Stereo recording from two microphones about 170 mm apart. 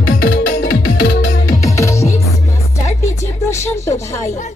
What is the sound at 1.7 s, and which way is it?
Music, 15° left (ahead or behind).